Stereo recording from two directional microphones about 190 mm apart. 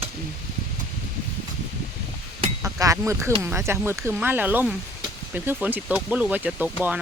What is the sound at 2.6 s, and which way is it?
Speech, 15° right (ahead or behind).